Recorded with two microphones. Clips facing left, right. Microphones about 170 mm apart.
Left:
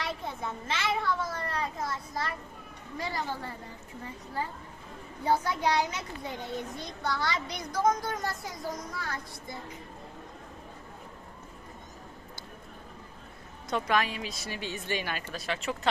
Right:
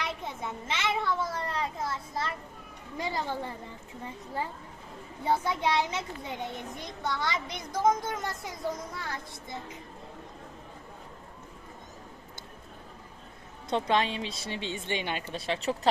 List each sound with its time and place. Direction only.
0.0 s children playing: 20° right (ahead or behind)
3.0 s a child's voice: 20° right (ahead or behind)
5.2 s a child's voice: 25° right (ahead or behind)
13.7 s a child's voice: 25° right (ahead or behind)